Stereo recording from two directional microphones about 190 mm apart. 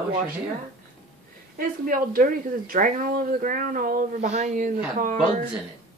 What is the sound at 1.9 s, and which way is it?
Speech, 50° right (ahead or behind).